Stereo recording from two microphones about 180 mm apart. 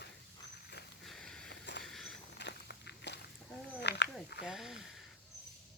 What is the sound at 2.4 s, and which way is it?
Walk, 70° left (ahead or behind).